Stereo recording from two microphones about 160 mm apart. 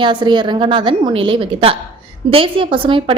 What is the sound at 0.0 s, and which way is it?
A woman's voice, 30° right (ahead or behind).